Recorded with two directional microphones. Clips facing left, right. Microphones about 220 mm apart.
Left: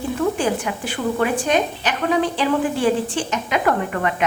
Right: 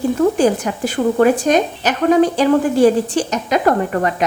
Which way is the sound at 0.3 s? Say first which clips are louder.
Right 6 dB; 40° right (ahead or behind).